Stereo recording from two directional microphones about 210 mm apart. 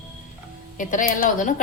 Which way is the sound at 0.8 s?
40° left (ahead or behind).